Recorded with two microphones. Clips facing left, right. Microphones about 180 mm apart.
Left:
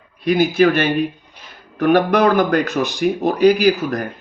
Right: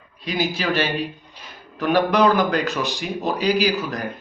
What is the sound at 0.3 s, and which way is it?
Speech, 55° left (ahead or behind).